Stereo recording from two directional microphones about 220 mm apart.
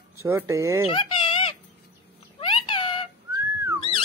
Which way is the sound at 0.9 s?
25° left (ahead or behind).